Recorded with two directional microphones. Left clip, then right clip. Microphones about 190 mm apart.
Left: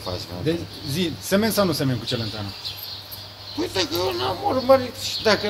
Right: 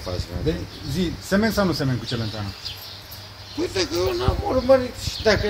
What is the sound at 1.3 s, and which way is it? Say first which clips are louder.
Speech: left 1 dB; 20° right (ahead or behind).